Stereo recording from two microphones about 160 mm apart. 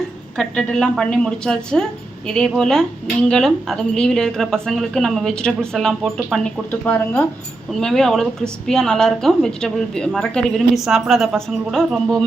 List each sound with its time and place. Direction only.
0.3 s a woman's voice: 5° left (ahead or behind)
6.7 s a woman's voice: 10° left (ahead or behind)